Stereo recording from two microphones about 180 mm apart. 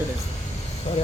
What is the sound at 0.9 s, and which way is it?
Speech, 40° left (ahead or behind).